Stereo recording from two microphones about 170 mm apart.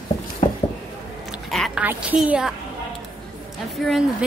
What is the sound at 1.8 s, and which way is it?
Speech, 5° right (ahead or behind).